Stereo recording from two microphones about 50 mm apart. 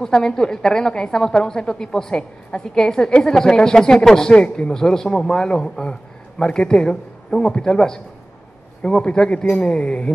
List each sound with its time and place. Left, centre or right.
0.0 s a man's voice: centre